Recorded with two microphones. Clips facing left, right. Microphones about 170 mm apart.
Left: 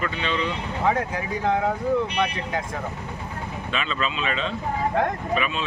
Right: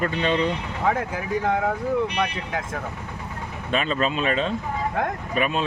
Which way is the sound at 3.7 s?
45° right (ahead or behind).